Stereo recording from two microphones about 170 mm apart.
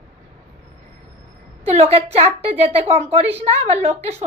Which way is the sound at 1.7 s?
35° right (ahead or behind).